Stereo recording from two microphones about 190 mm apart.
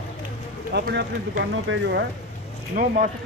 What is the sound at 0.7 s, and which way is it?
Speech, 60° right (ahead or behind).